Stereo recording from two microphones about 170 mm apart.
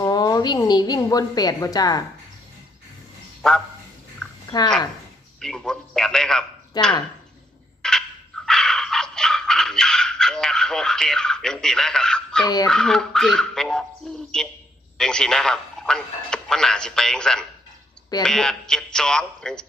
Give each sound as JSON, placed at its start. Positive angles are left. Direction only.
{"t": 0.0, "sound": "a woman's voice", "side_deg": 20}
{"t": 3.4, "sound": "speech", "side_deg": 5}
{"t": 5.4, "sound": "a man's voice", "side_deg": 5}
{"t": 6.8, "sound": "speech", "side_deg": 25}
{"t": 7.8, "sound": "turkey", "side_deg": 5}
{"t": 8.4, "sound": "a sound", "side_deg": 5}
{"t": 12.6, "sound": "speech", "side_deg": 5}